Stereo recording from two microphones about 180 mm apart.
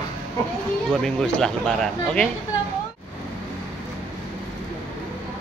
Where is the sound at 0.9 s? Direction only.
5° left (ahead or behind).